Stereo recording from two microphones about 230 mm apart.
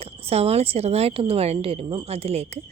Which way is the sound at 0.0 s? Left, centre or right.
Right.